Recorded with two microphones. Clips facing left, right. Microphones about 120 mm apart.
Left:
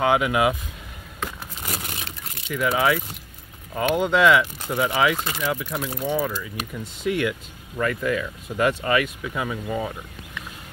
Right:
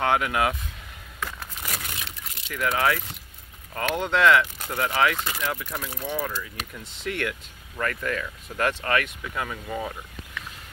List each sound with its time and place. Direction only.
0.0 s speech: 5° left (ahead or behind)
1.2 s a sound: 25° left (ahead or behind)
2.5 s speech: 5° left (ahead or behind)